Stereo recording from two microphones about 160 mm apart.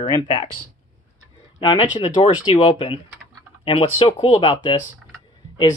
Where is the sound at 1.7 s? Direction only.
40° left (ahead or behind).